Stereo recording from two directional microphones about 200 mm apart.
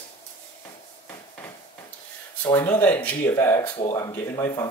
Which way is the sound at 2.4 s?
20° left (ahead or behind).